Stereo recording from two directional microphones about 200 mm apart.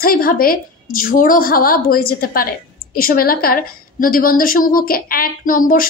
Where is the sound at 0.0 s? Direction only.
45° left (ahead or behind).